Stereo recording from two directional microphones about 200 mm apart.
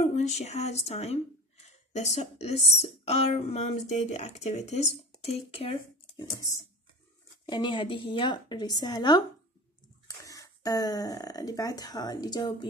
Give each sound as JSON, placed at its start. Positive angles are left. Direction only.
{"t": 0.0, "sound": "speech", "side_deg": 35}
{"t": 7.4, "sound": "a woman's voice", "side_deg": 20}